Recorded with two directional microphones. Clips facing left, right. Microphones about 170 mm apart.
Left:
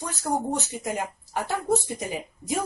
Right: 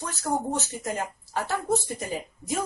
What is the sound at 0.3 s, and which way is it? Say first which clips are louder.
Speech: left 1 dB; 15° left (ahead or behind).